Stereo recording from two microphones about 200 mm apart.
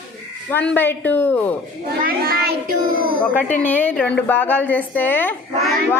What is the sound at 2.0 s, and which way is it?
A child's voice, 50° right (ahead or behind).